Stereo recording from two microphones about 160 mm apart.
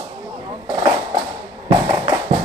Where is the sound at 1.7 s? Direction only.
25° right (ahead or behind).